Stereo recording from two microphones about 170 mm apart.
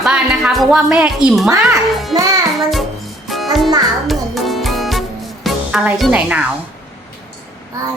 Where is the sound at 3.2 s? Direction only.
Centre (ahead or behind).